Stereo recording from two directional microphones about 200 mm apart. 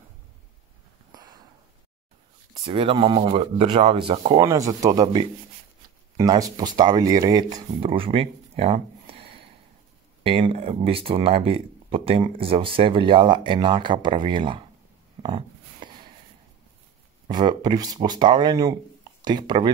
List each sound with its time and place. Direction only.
2.6 s speech: 25° right (ahead or behind)
4.4 s speech: 15° right (ahead or behind)
15.2 s a sound: 30° right (ahead or behind)
17.3 s speech: 20° right (ahead or behind)